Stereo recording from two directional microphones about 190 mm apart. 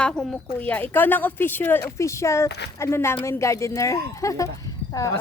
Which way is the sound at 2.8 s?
15° left (ahead or behind).